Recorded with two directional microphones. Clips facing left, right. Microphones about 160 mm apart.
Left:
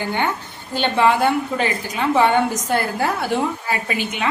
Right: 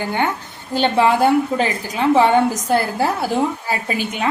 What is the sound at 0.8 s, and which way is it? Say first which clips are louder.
A woman's voice: right 2 dB; 35° right (ahead or behind).